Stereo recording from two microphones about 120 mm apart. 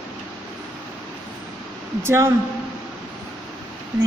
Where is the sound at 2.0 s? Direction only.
20° right (ahead or behind).